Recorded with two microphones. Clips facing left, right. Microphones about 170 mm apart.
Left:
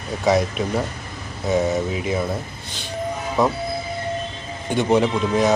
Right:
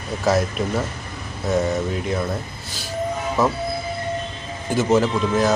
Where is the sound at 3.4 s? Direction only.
Centre (ahead or behind).